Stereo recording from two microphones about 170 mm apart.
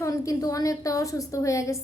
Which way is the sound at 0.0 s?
20° left (ahead or behind).